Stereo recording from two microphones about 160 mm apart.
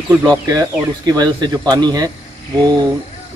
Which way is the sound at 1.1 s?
25° right (ahead or behind).